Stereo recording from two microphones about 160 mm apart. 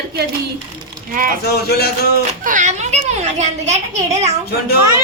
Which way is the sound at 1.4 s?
85° left.